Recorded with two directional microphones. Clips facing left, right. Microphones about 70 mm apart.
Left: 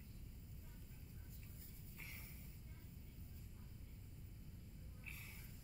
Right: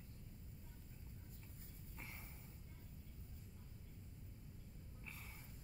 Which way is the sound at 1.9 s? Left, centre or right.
Right.